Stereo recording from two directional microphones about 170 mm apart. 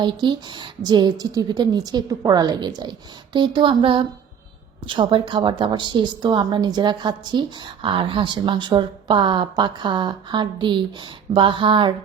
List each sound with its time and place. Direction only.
0.0 s a woman's voice: 25° right (ahead or behind)